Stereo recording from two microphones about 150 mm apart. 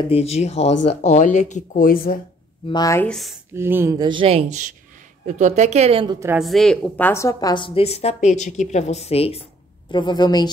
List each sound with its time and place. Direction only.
0.1 s speech: 45° left (ahead or behind); by 2.1 s 70° left (ahead or behind)
2.7 s a woman's voice: 25° left (ahead or behind)
3.0 s speech: 5° left (ahead or behind)
3.5 s speech: 15° right (ahead or behind)
4.0 s speech: 35° right (ahead or behind)
5.2 s a woman's voice: 50° right (ahead or behind)
6.3 s a woman's voice: centre (ahead or behind); by 9.4 s 40° left (ahead or behind)
9.8 s a woman's voice: 30° left (ahead or behind)